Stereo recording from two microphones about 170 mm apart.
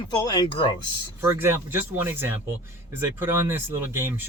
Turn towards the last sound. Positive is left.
turn(degrees=-15)  # may be behind; listen again after turning